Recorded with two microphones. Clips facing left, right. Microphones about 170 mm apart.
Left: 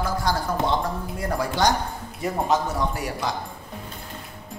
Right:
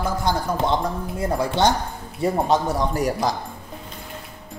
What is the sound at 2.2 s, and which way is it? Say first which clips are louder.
A man's voice: right 3 dB; 35° right (ahead or behind).